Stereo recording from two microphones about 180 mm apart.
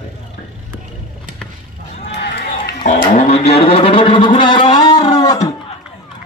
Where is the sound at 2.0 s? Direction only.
70° left (ahead or behind).